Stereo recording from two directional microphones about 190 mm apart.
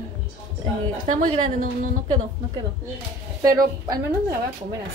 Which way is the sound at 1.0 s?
40° right (ahead or behind).